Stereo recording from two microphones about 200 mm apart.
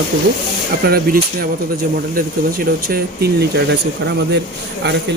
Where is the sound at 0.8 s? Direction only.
50° right (ahead or behind).